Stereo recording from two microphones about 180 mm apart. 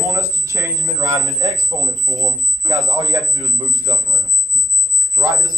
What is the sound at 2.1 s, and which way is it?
Speech, 45° right (ahead or behind).